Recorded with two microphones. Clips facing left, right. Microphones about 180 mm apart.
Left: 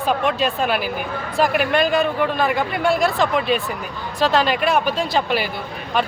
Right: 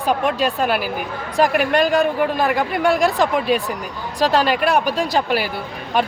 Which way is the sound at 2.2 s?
10° right (ahead or behind).